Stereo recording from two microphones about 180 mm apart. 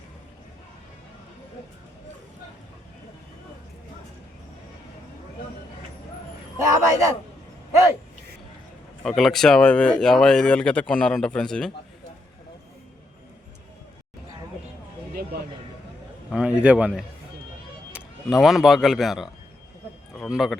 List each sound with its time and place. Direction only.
6.6 s a man's voice: 15° right (ahead or behind)
9.0 s speech: centre (ahead or behind)
15.1 s a sound: 55° right (ahead or behind)
16.3 s a man's voice: 5° right (ahead or behind)